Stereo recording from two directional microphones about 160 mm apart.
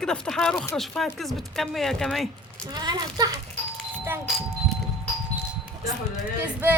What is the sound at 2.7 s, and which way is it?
Speech, 25° right (ahead or behind).